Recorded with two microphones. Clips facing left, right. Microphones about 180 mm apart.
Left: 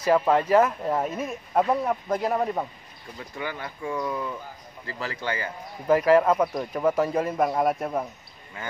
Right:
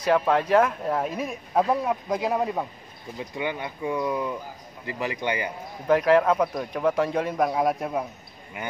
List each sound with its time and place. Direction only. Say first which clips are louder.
0.0 s speech: left 1 dB; 5° left (ahead or behind)
3.2 s speech: right 4 dB; 20° right (ahead or behind)
5.9 s speech: even; 5° left (ahead or behind)
8.6 s speech: right 2 dB; 20° right (ahead or behind)